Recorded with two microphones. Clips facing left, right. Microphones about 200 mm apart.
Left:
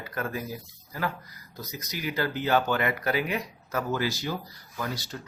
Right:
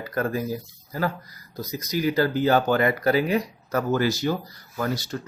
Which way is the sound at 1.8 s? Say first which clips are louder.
Right 8 dB; 35° right (ahead or behind).